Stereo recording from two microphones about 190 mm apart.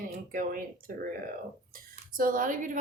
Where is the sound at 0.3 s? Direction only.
50° right (ahead or behind).